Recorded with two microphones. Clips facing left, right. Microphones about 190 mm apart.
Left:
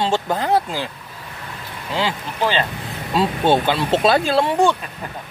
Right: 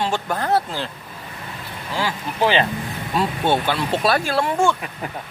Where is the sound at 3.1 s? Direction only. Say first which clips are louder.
Left 3 dB; 15° left (ahead or behind).